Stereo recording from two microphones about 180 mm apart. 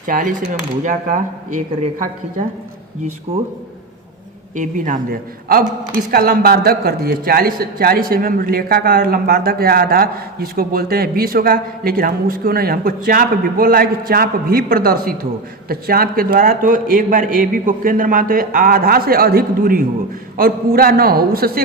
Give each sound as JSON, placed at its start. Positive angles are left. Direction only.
{"t": 0.0, "sound": "a man's voice", "side_deg": -50}
{"t": 4.5, "sound": "a man's voice", "side_deg": -45}